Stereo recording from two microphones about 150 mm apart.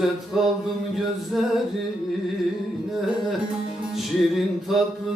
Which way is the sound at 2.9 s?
Centre (ahead or behind).